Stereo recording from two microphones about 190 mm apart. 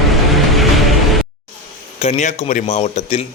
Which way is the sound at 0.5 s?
Centre (ahead or behind).